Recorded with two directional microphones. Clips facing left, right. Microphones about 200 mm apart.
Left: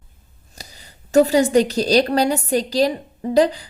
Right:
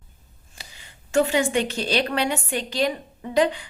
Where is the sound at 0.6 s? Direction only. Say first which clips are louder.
Left 5 dB; 40° left (ahead or behind).